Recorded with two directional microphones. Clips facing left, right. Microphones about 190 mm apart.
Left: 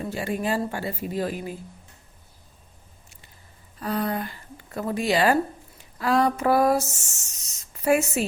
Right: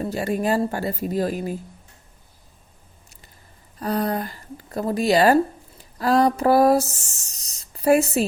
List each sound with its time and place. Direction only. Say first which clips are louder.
0.0 s speech: right 4 dB; 40° right (ahead or behind)
3.8 s a woman's voice: right 3 dB; 40° right (ahead or behind)